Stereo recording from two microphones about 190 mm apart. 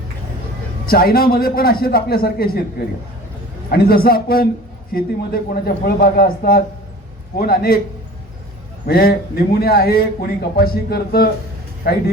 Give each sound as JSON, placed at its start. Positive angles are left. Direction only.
{"t": 0.9, "sound": "a man's voice", "side_deg": 50}
{"t": 8.9, "sound": "speech", "side_deg": 55}